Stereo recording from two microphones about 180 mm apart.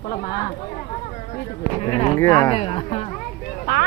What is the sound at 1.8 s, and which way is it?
Speech, 35° left (ahead or behind).